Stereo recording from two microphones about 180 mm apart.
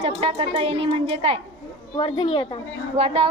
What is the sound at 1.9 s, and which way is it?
Speech, 30° left (ahead or behind).